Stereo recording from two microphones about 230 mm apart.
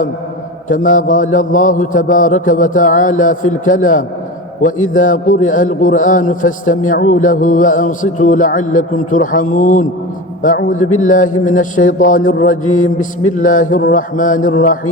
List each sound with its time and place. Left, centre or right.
0.7 s a man's voice: left